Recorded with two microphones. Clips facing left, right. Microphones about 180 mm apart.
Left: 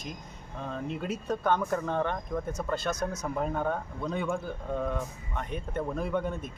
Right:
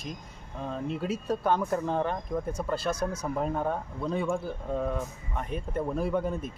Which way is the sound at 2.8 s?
30° right (ahead or behind).